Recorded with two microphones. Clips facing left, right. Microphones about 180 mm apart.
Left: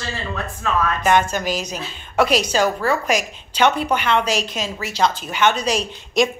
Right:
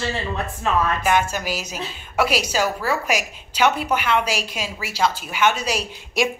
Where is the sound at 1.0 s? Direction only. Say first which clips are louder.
Left 3 dB; 5° right (ahead or behind).